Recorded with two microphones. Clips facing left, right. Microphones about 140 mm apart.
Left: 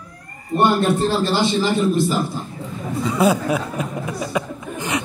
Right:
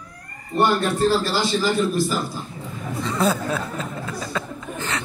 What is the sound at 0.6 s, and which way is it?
A man's voice, 25° left (ahead or behind).